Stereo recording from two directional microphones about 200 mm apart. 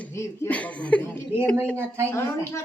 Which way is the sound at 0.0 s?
10° left (ahead or behind).